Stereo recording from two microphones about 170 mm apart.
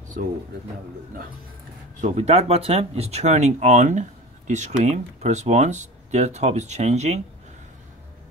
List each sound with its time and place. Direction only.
0.2 s speech: 55° right (ahead or behind)
2.0 s speech: 40° right (ahead or behind)